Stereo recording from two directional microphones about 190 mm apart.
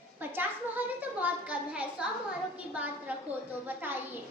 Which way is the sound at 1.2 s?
5° right (ahead or behind).